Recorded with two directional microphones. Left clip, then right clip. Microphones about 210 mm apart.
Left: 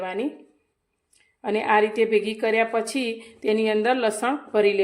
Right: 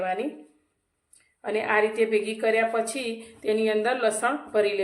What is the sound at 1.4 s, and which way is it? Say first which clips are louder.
A woman's voice: left 3 dB; 40° left (ahead or behind).